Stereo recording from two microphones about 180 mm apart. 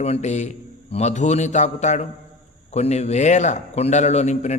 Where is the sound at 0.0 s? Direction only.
40° left (ahead or behind).